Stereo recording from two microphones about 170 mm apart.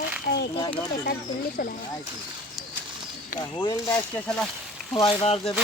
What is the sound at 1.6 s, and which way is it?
Speech, 60° left (ahead or behind).